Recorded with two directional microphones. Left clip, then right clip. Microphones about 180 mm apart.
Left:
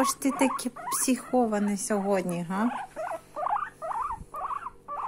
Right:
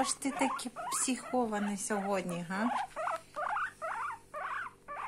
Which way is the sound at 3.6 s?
55° right (ahead or behind).